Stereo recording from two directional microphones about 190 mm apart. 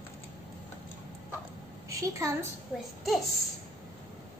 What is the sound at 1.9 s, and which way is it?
Speech, 15° right (ahead or behind).